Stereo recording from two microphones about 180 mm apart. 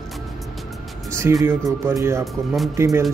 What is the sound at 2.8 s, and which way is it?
Speech, 15° right (ahead or behind).